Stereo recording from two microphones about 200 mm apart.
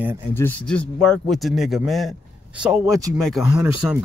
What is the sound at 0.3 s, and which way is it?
Speech, 10° left (ahead or behind).